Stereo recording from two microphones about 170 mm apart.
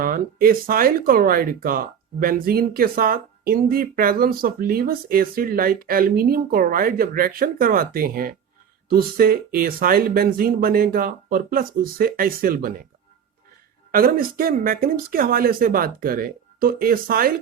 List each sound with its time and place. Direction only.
0.0 s speech: 60° right (ahead or behind)
13.9 s speech: 60° right (ahead or behind)